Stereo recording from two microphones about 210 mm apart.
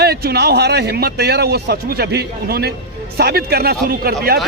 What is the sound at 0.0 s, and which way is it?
A man's voice, 50° right (ahead or behind).